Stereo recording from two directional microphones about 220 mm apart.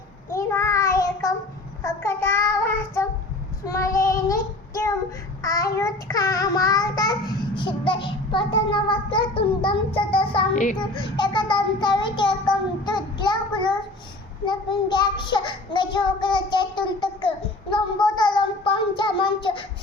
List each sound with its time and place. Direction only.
0.3 s child singing: 15° left (ahead or behind); by 10.8 s 35° left (ahead or behind)
10.8 s child singing: 20° left (ahead or behind)